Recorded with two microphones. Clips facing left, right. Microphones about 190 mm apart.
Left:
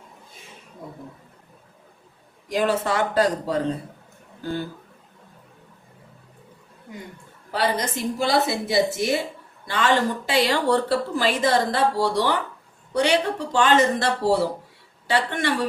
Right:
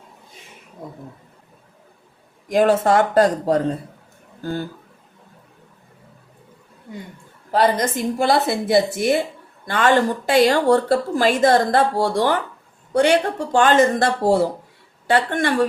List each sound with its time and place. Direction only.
2.5 s speech: 50° right (ahead or behind)
7.5 s speech: 50° right (ahead or behind)